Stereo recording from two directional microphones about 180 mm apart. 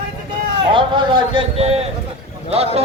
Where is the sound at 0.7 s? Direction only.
25° right (ahead or behind).